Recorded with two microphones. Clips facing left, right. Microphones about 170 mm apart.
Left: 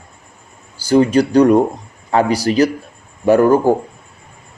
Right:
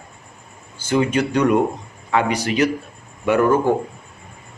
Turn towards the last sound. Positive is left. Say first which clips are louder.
# left 5 dB
turn(degrees=35)  # may be behind; listen again after turning